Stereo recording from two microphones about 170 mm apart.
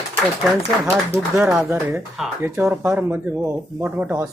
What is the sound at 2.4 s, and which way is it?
Speech, 15° right (ahead or behind).